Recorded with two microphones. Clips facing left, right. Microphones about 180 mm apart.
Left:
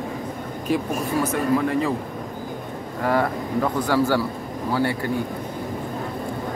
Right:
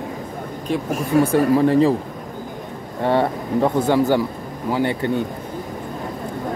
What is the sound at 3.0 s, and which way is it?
Speech, 25° right (ahead or behind).